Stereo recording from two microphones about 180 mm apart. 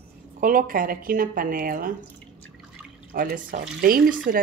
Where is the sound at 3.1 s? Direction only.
50° right (ahead or behind).